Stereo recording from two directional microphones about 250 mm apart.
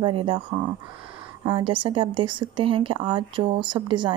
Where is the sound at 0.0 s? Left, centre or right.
Centre.